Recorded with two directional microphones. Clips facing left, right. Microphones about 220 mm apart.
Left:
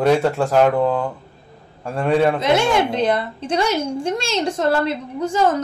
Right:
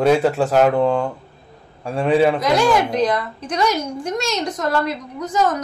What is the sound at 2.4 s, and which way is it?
A woman's voice, 25° left (ahead or behind).